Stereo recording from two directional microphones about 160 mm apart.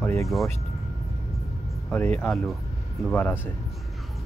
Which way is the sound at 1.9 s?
5° left (ahead or behind).